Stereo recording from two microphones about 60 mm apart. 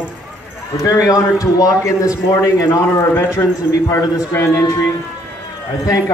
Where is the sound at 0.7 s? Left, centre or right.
Left.